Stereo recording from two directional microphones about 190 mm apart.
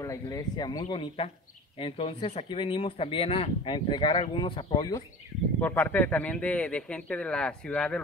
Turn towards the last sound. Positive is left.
turn(degrees=5)  # may be behind; listen again after turning